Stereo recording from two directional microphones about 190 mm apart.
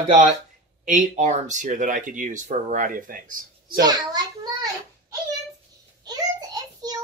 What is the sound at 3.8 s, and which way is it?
Speech, 20° right (ahead or behind).